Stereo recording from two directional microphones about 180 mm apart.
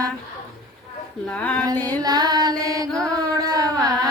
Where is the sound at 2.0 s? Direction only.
20° right (ahead or behind).